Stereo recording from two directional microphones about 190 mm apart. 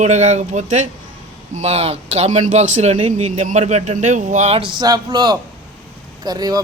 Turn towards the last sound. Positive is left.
turn(degrees=-20)  # may be behind; listen again after turning